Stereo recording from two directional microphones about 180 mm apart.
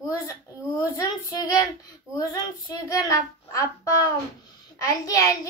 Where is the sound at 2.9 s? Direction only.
20° left (ahead or behind).